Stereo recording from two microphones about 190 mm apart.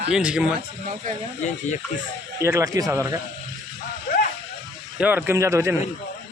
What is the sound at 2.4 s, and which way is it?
Speech, 15° right (ahead or behind).